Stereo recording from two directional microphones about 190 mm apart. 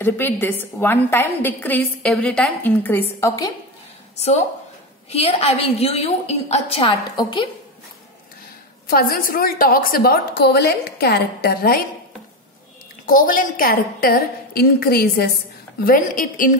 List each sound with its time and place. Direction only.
0.0 s a woman's voice: 10° left (ahead or behind)
5.1 s a woman's voice: 35° left (ahead or behind)
8.8 s a woman's voice: 50° left (ahead or behind)
13.0 s a woman's voice: 45° left (ahead or behind)